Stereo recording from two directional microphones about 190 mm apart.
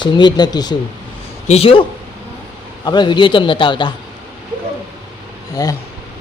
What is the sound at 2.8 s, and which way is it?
Speech, 25° left (ahead or behind).